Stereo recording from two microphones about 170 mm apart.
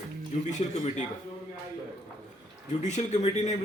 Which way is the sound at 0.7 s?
40° left (ahead or behind).